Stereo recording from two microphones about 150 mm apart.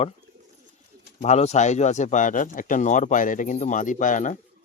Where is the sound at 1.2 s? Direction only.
45° left (ahead or behind).